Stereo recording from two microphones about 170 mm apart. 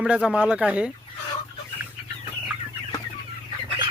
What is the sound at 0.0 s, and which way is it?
Speech, 5° right (ahead or behind).